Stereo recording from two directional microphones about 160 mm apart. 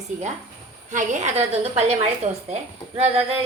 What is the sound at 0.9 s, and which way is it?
A woman's voice, 50° right (ahead or behind).